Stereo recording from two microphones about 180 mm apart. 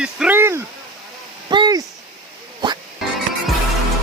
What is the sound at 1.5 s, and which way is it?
Speech, 25° right (ahead or behind).